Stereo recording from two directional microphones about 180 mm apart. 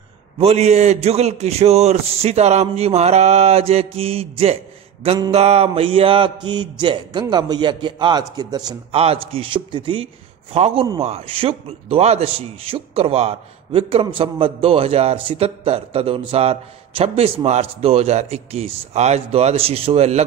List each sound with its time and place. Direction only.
0.4 s a man's voice: 35° right (ahead or behind)
8.9 s a man's voice: 35° right (ahead or behind)